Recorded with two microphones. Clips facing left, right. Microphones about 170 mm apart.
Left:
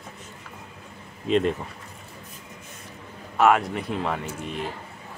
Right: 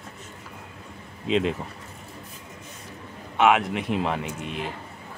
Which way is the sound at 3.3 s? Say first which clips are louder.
Even; centre (ahead or behind).